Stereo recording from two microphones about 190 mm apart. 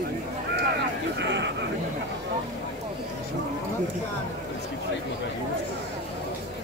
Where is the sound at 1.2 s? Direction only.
65° right (ahead or behind).